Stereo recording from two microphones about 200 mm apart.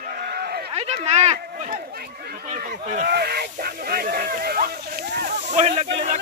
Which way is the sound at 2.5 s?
40° right (ahead or behind).